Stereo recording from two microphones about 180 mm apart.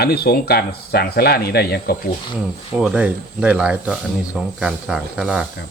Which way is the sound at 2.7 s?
5° right (ahead or behind).